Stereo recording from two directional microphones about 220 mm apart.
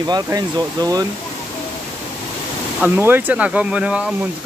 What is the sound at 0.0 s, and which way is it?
Speech, 20° right (ahead or behind).